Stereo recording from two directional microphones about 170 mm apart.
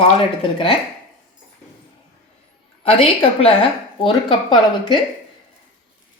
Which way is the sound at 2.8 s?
35° left (ahead or behind).